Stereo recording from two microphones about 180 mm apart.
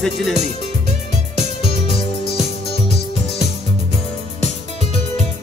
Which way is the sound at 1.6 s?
35° left (ahead or behind).